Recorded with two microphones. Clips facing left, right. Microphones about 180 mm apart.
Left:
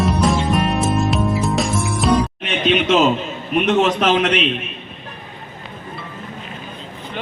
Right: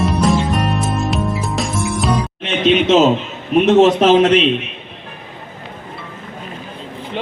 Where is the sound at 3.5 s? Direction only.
35° right (ahead or behind).